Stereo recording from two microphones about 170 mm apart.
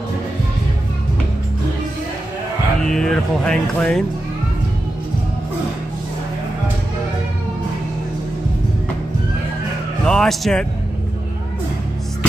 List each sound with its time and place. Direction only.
2.9 s speech: 5° left (ahead or behind)
10.0 s speech: centre (ahead or behind)